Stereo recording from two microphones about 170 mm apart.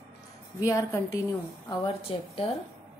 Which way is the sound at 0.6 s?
20° left (ahead or behind).